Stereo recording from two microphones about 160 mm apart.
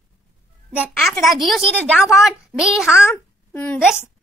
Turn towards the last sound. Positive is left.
turn(degrees=10)  # may be behind; listen again after turning